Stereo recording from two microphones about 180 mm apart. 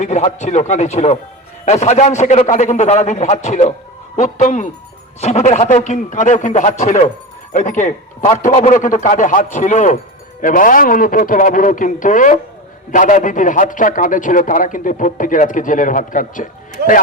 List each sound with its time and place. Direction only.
0.0 s a man's voice: 40° left (ahead or behind)